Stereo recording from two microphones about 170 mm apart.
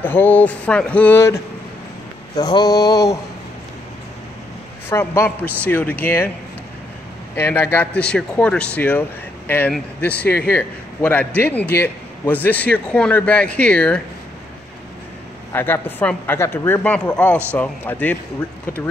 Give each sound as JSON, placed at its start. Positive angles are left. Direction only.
{"t": 0.0, "sound": "a man's voice", "side_deg": 10}
{"t": 2.3, "sound": "mantra", "side_deg": 20}
{"t": 4.8, "sound": "a man's voice", "side_deg": 15}
{"t": 7.3, "sound": "a man's voice", "side_deg": 15}
{"t": 15.5, "sound": "a man's voice", "side_deg": 10}